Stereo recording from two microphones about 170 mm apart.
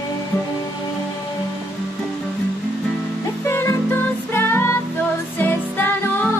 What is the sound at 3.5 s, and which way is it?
Music, 15° left (ahead or behind).